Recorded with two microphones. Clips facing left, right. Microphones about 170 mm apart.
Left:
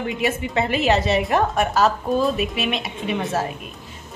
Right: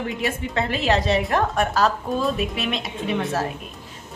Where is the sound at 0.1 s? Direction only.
Centre (ahead or behind).